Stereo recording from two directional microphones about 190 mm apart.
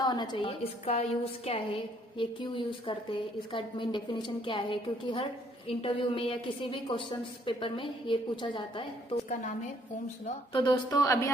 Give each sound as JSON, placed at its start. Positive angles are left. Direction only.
{"t": 0.0, "sound": "a woman's voice", "side_deg": 20}
{"t": 10.5, "sound": "a woman's voice", "side_deg": 25}